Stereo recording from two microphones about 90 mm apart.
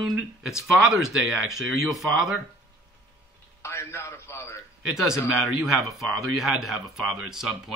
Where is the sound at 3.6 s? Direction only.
30° left (ahead or behind).